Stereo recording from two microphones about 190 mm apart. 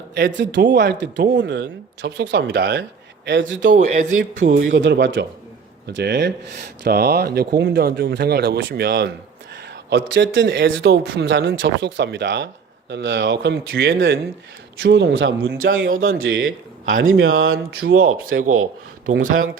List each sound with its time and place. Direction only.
0.3 s speech: 70° right (ahead or behind)
3.2 s speech: 75° right (ahead or behind)
3.7 s a man's voice: 40° right (ahead or behind)
4.6 s speech: 75° right (ahead or behind)
5.8 s speech: 60° right (ahead or behind)
9.9 s speech: 70° right (ahead or behind)
15.8 s speech: 90° right; by 18.5 s 50° right (ahead or behind)